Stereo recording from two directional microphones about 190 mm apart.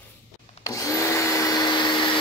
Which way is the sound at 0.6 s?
15° left (ahead or behind).